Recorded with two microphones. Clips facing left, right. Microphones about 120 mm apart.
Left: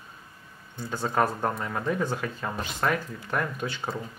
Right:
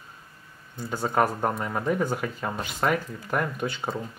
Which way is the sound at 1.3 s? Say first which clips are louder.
Right 2 dB; 10° right (ahead or behind).